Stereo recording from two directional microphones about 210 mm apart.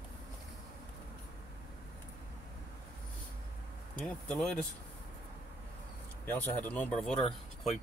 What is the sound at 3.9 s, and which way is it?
Speech, 5° left (ahead or behind).